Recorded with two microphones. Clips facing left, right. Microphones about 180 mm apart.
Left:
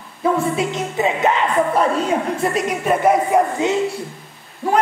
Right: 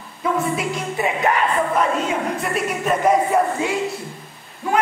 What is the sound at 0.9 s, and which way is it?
Music, 20° left (ahead or behind).